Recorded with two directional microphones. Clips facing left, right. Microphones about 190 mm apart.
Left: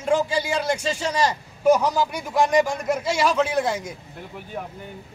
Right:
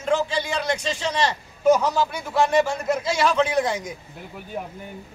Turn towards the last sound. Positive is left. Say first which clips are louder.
# right 1 dB
turn(degrees=-10)  # may be behind; listen again after turning